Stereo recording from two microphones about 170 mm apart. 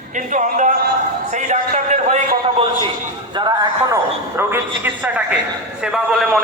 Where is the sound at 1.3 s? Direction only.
45° right (ahead or behind).